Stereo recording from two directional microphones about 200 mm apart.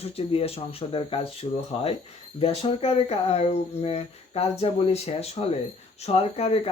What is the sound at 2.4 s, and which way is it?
Speech, 30° left (ahead or behind).